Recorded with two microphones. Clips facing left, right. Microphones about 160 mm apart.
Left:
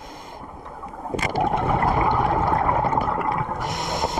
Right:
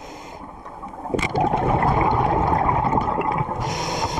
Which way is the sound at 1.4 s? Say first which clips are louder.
Right 1 dB; 30° right (ahead or behind).